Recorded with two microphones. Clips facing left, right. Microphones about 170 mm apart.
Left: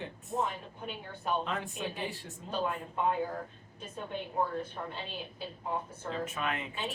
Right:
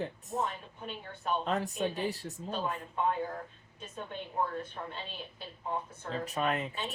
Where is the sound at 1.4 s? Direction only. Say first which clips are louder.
Right 4 dB; 40° right (ahead or behind).